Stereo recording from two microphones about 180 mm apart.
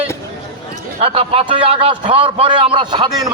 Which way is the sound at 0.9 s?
30° right (ahead or behind).